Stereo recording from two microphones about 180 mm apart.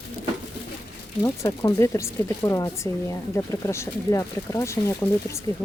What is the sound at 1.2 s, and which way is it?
Speech, 15° left (ahead or behind).